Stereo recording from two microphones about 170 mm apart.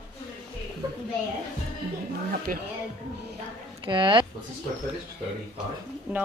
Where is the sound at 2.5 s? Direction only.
55° right (ahead or behind).